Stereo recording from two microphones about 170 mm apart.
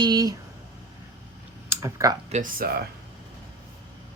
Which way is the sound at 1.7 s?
20° right (ahead or behind).